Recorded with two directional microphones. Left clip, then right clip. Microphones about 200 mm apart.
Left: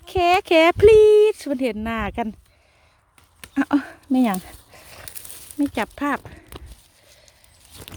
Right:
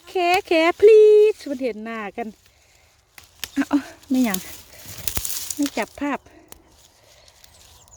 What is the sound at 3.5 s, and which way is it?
Speech, 20° left (ahead or behind).